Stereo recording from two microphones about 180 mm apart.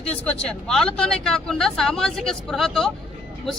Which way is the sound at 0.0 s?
5° left (ahead or behind).